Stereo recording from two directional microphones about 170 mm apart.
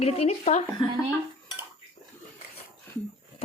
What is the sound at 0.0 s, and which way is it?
Speech, 40° left (ahead or behind).